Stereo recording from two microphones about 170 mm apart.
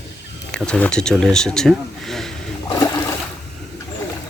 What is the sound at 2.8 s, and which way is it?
Water, 20° left (ahead or behind).